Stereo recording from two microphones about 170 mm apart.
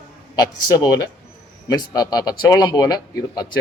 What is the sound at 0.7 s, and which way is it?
A man's voice, 25° left (ahead or behind).